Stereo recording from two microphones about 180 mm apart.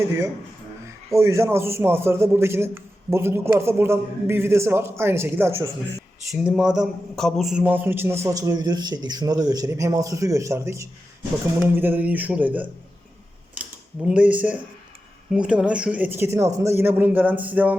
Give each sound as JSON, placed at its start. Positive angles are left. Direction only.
{"t": 1.1, "sound": "a man's voice", "side_deg": -15}
{"t": 13.5, "sound": "a sound", "side_deg": -5}
{"t": 15.3, "sound": "a man's voice", "side_deg": -5}